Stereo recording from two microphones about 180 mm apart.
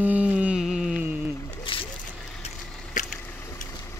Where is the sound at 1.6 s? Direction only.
30° left (ahead or behind).